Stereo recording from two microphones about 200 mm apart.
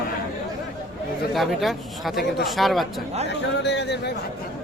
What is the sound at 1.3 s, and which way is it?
Speech, centre (ahead or behind).